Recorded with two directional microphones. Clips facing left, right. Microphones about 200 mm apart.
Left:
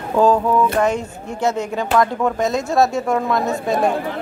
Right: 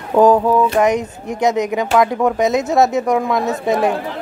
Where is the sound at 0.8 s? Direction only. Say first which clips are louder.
Right 3 dB; 15° right (ahead or behind).